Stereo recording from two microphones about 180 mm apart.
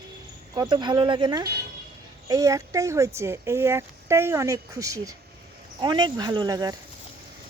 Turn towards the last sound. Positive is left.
turn(degrees=-20)  # may be behind; listen again after turning